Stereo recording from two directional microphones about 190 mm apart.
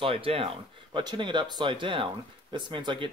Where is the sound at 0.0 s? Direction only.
30° right (ahead or behind).